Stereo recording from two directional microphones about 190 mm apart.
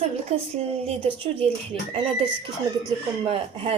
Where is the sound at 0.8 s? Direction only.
30° right (ahead or behind).